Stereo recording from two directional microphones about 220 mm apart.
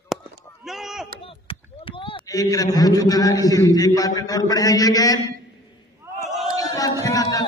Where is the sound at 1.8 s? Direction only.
25° left (ahead or behind).